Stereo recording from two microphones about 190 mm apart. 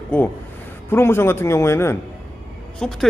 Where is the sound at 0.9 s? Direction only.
15° left (ahead or behind).